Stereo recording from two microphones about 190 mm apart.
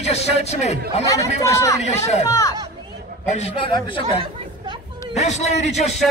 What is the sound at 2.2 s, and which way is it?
Speech, 15° left (ahead or behind).